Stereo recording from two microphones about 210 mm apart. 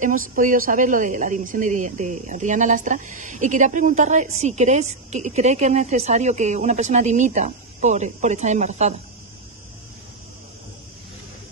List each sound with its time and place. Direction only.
0.0 s a woman's voice: 40° right (ahead or behind)